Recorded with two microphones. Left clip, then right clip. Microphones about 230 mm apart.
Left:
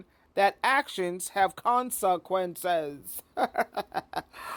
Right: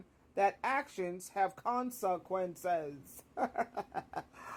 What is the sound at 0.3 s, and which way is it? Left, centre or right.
Speech, left.